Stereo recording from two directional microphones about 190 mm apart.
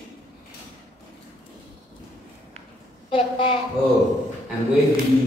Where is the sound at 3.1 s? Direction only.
25° left (ahead or behind).